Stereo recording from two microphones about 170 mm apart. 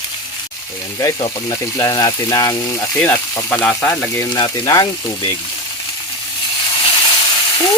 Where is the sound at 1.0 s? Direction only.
20° left (ahead or behind).